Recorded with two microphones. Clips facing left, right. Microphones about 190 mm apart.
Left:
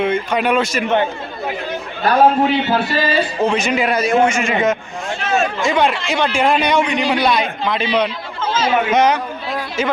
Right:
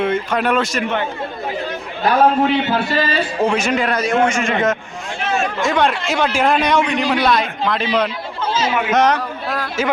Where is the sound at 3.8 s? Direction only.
10° left (ahead or behind).